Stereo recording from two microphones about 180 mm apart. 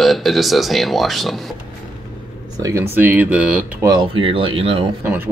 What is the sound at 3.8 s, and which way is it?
Speech, 25° right (ahead or behind).